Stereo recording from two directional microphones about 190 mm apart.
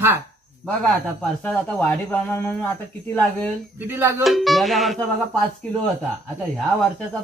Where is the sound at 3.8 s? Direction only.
10° right (ahead or behind).